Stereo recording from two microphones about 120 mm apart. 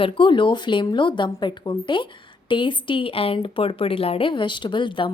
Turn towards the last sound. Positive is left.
turn(degrees=45)  # may be behind; listen again after turning